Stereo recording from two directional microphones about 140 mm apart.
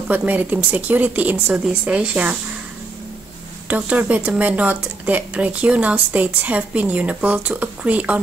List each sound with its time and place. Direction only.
0.1 s speech: 10° right (ahead or behind)
3.6 s speech: 10° right (ahead or behind)